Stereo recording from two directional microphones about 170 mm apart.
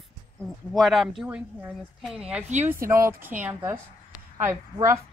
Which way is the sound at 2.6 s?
15° right (ahead or behind).